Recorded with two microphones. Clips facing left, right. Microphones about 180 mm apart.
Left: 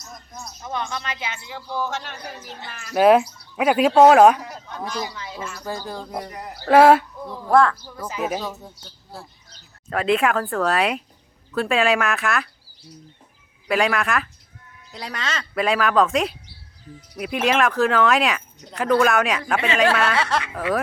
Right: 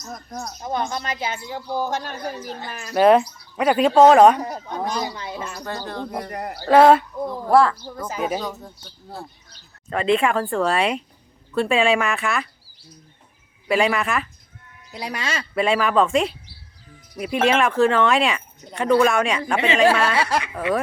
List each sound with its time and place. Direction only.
0.1 s speech: 65° right (ahead or behind)
0.6 s speech: 40° right (ahead or behind)
2.9 s speech: 5° left (ahead or behind)
4.4 s speech: 50° right (ahead or behind)
5.6 s speech: 5° left (ahead or behind)
6.3 s speech: 55° right (ahead or behind)
6.7 s speech: 10° left (ahead or behind)
7.5 s speech: 5° right (ahead or behind)
8.2 s speech: 5° left (ahead or behind)
9.9 s speech: 5° left (ahead or behind)
13.7 s speech: centre (ahead or behind)
19.5 s speech: 20° right (ahead or behind)
19.9 s speech: centre (ahead or behind)
20.1 s speech: 20° right (ahead or behind)